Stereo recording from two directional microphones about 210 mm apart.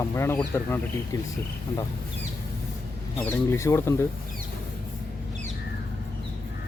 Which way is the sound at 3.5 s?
15° left (ahead or behind).